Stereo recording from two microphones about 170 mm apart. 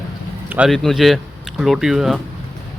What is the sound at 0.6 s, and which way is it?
Speech, centre (ahead or behind).